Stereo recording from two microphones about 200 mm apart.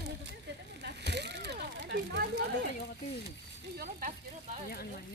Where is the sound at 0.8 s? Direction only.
55° right (ahead or behind).